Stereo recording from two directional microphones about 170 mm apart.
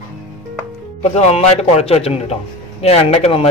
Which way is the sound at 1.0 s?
40° left (ahead or behind).